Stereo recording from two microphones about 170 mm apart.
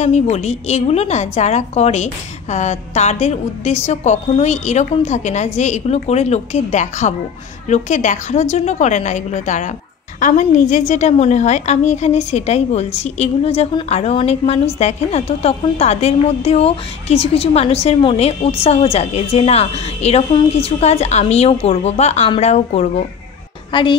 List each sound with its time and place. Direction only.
0.0 s a woman's voice: 40° left (ahead or behind)
23.7 s a woman's voice: 30° left (ahead or behind)